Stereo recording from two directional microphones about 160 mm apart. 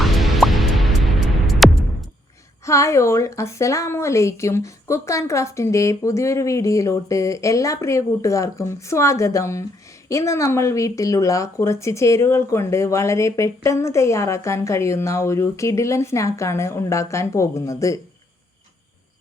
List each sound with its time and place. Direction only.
0.0 s music: centre (ahead or behind)
2.6 s a woman's voice: 20° left (ahead or behind)